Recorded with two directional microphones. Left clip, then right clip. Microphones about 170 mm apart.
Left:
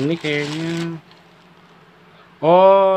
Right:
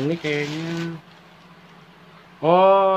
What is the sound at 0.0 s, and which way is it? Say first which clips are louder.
Speech: left 3 dB; 35° left (ahead or behind).